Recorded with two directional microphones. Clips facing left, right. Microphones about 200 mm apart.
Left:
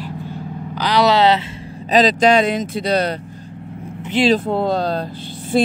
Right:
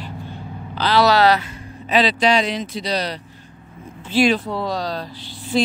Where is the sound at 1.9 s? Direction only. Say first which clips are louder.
Left 4 dB; 45° left (ahead or behind).